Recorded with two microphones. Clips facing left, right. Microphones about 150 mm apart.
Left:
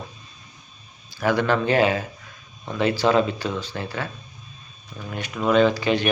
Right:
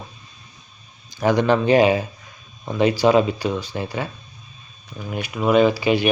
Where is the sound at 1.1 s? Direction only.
20° right (ahead or behind).